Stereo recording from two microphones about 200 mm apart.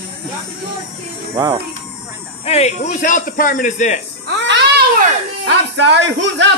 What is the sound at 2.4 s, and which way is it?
A man's voice, 30° left (ahead or behind).